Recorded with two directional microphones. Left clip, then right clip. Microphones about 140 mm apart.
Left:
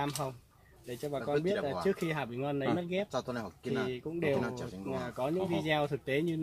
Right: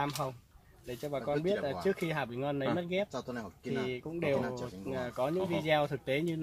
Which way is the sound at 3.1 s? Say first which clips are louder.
Left 4 dB; 90° left.